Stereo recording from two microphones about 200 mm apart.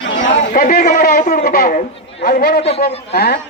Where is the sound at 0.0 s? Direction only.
65° left (ahead or behind).